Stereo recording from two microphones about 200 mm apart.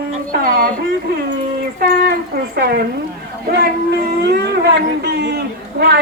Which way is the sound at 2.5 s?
50° right (ahead or behind).